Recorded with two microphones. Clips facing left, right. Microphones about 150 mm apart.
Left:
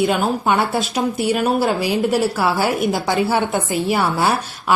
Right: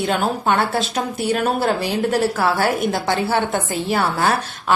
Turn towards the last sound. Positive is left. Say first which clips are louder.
# left 1 dB
turn(degrees=10)  # may be behind; listen again after turning